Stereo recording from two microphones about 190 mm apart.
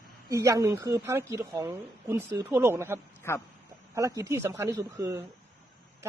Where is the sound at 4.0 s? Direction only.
15° right (ahead or behind).